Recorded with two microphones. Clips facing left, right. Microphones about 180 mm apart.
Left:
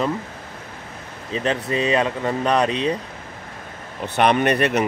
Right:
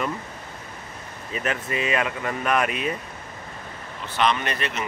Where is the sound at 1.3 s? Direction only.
30° left (ahead or behind).